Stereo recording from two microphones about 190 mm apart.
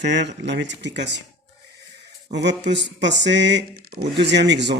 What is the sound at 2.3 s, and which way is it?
Speech, 65° right (ahead or behind).